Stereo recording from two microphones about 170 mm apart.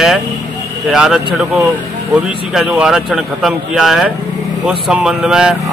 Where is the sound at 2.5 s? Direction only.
5° right (ahead or behind).